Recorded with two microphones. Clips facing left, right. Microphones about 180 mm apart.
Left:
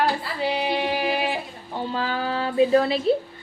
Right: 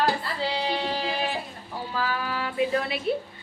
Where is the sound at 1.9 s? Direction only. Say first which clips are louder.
Left 2 dB; 30° left (ahead or behind).